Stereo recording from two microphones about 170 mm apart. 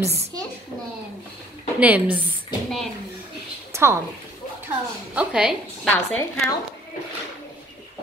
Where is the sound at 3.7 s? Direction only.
15° right (ahead or behind).